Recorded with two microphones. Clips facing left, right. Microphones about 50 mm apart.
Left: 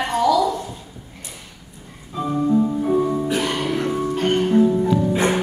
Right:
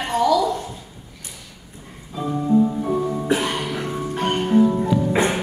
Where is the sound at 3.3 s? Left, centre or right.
Centre.